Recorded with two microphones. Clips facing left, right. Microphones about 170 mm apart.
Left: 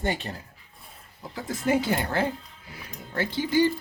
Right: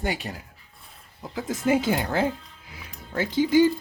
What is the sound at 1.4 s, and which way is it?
Speech, 15° right (ahead or behind).